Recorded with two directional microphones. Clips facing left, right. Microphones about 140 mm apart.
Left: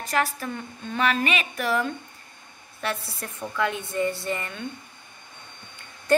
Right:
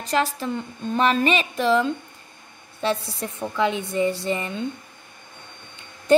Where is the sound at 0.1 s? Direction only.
20° right (ahead or behind).